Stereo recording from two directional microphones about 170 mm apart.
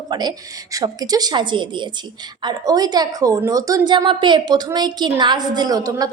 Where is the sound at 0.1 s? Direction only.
25° right (ahead or behind).